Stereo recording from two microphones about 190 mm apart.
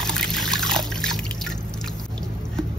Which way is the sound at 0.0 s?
5° left (ahead or behind).